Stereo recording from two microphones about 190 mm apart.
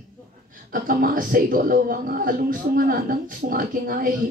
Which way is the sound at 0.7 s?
50° right (ahead or behind).